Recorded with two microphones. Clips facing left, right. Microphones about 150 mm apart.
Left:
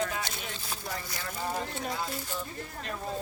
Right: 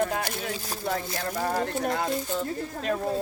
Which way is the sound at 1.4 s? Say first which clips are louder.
Right 6 dB; 65° right (ahead or behind).